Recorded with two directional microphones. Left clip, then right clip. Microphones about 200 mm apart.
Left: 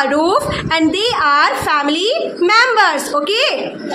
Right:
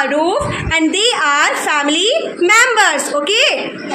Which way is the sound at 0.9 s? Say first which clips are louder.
Even; centre (ahead or behind).